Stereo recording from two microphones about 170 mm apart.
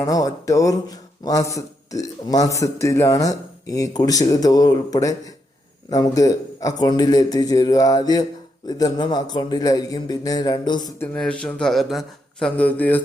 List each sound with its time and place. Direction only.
0.0 s speech: 20° left (ahead or behind)
11.1 s speech: 5° left (ahead or behind)